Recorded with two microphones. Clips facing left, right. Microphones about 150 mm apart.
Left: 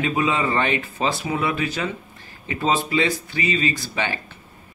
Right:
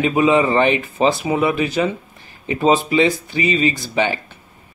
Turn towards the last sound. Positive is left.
turn(degrees=-20)  # may be behind; listen again after turning